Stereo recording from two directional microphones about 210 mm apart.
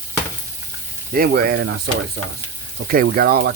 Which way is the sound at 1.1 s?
40° right (ahead or behind).